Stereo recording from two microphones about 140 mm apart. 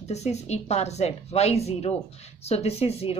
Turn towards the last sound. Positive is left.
turn(degrees=45)  # may be behind; listen again after turning